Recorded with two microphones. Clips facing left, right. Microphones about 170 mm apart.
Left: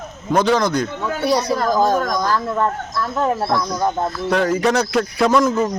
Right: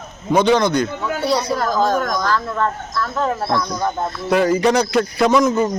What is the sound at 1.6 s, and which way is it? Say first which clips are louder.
Speech: left 1 dB; 15° left (ahead or behind).